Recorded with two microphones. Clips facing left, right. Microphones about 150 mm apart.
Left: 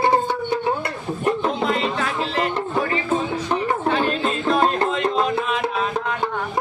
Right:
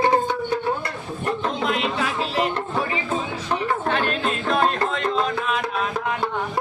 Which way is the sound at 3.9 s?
5° left (ahead or behind).